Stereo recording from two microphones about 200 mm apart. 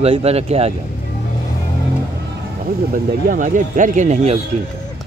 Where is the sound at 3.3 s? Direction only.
40° right (ahead or behind).